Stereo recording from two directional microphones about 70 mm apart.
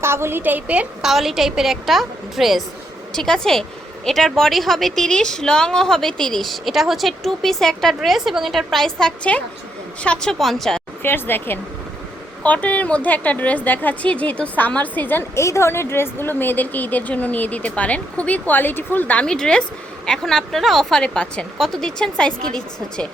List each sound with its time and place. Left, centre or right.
0.0 s a woman's voice: right
1.0 s speech: centre
11.0 s speech: left
12.4 s speech: left
15.4 s speech: left
19.2 s speech: centre